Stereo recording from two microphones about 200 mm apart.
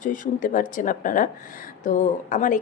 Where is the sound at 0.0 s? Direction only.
40° left (ahead or behind).